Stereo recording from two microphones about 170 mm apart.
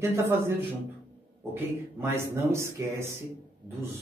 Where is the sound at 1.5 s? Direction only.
15° right (ahead or behind).